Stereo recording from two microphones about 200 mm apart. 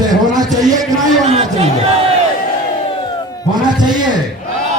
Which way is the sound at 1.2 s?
30° right (ahead or behind).